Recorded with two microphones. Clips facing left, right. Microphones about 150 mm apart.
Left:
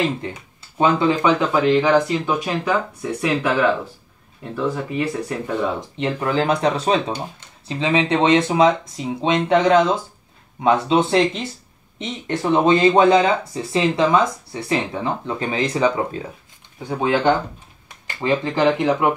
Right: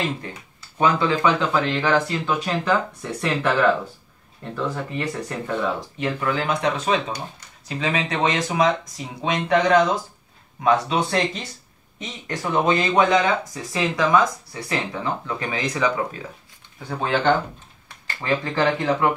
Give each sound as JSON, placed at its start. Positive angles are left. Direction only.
{"t": 0.2, "sound": "speech", "side_deg": 20}
{"t": 5.8, "sound": "speech", "side_deg": 25}
{"t": 16.9, "sound": "speech", "side_deg": 10}